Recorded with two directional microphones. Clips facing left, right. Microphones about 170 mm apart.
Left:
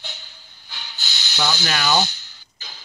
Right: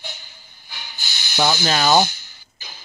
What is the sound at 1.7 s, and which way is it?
Speech, 45° right (ahead or behind).